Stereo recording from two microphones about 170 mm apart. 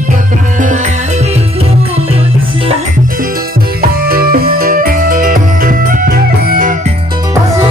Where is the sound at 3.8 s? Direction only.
60° right (ahead or behind).